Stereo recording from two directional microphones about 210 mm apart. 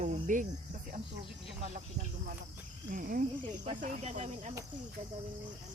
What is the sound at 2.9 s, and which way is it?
Speech, 40° right (ahead or behind).